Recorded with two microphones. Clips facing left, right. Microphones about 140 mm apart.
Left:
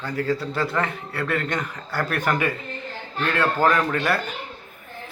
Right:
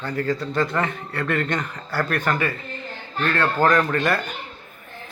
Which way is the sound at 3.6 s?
5° left (ahead or behind).